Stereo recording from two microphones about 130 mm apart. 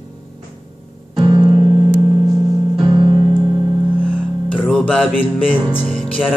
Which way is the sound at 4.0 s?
10° left (ahead or behind).